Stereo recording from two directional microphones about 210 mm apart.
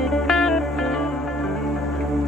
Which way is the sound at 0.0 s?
Centre (ahead or behind).